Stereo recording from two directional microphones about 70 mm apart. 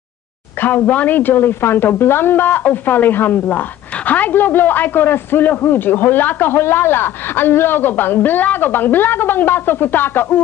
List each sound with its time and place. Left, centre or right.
0.6 s a woman's voice: left